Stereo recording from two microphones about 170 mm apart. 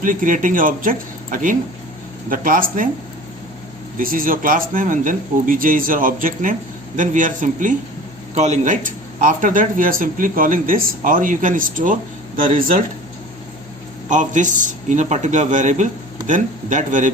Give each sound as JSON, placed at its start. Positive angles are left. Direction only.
{"t": 0.0, "sound": "speech", "side_deg": -50}
{"t": 3.9, "sound": "speech", "side_deg": -55}
{"t": 14.1, "sound": "speech", "side_deg": -45}